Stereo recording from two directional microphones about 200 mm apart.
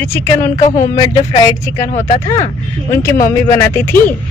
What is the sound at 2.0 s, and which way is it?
Speech, 15° left (ahead or behind).